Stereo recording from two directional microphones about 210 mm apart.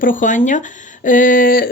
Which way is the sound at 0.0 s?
40° left (ahead or behind).